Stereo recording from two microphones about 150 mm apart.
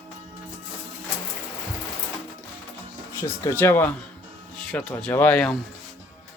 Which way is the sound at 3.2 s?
20° left (ahead or behind).